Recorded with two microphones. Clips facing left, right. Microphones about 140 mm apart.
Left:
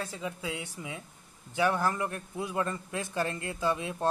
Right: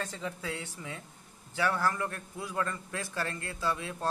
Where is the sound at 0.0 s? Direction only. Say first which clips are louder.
Left 1 dB; 10° left (ahead or behind).